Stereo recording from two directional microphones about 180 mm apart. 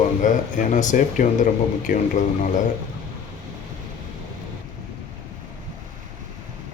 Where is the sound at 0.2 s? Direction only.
45° left (ahead or behind).